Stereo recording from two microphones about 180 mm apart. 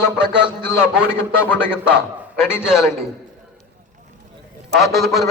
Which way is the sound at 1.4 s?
10° left (ahead or behind).